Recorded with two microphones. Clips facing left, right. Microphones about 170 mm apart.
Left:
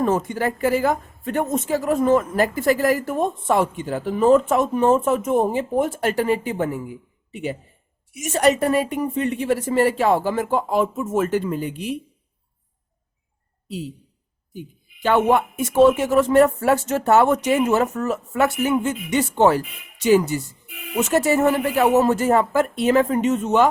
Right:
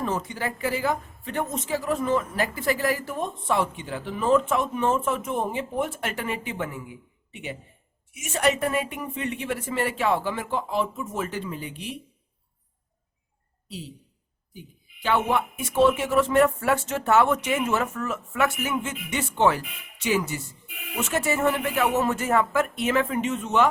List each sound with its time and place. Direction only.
0.0 s speech: 50° left (ahead or behind)
8.1 s speech: 40° left (ahead or behind)
15.0 s speech: 50° left (ahead or behind)